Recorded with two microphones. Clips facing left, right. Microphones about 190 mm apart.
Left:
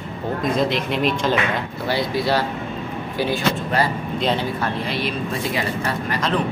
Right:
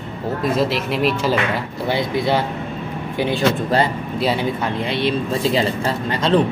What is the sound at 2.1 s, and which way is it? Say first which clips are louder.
Speech: right 1 dB; 20° right (ahead or behind).